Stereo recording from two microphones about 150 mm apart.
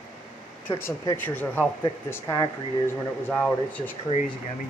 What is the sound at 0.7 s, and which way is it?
Speech, 15° left (ahead or behind).